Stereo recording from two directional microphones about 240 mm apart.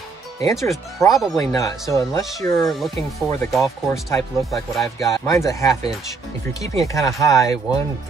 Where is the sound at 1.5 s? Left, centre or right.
Centre.